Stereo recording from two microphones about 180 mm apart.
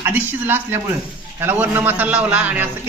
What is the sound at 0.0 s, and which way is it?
A man's voice, 10° right (ahead or behind).